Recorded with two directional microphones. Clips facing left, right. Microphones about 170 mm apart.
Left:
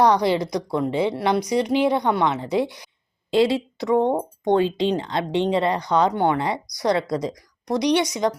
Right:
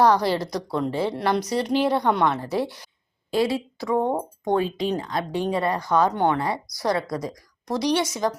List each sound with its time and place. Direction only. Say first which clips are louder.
0.0 s a woman's voice: left 1 dB; 15° left (ahead or behind)
3.3 s a woman's voice: left 4 dB; 25° left (ahead or behind)